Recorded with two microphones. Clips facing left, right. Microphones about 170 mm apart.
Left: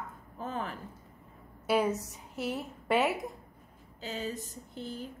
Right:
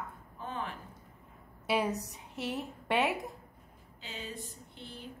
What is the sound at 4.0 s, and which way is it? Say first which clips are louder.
A woman's voice: left 6 dB; 40° left (ahead or behind).